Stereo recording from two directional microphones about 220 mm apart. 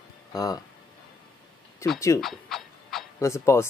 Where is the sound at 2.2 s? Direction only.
Centre (ahead or behind).